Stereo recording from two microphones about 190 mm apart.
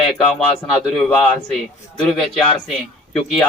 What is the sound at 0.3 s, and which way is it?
Speech, 5° left (ahead or behind).